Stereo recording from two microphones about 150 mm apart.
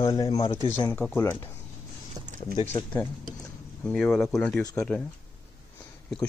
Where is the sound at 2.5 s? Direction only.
45° left (ahead or behind).